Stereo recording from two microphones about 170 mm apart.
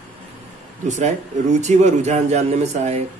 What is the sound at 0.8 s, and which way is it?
A man's voice, 45° right (ahead or behind).